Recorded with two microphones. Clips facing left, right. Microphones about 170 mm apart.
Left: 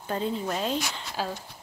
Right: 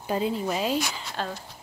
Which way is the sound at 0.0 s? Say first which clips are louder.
Right 3 dB; 5° right (ahead or behind).